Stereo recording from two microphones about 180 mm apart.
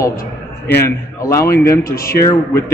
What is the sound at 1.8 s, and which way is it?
Speech, 55° left (ahead or behind).